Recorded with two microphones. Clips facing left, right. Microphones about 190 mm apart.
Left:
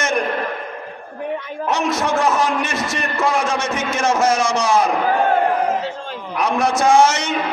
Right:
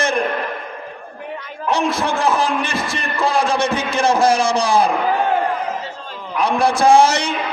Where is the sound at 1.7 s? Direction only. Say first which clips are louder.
Right 1 dB; 30° right (ahead or behind).